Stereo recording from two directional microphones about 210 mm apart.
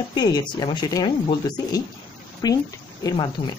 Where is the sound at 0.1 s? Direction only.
20° left (ahead or behind).